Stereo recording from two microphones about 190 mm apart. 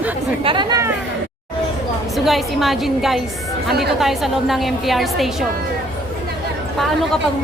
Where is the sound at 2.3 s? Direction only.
Centre (ahead or behind).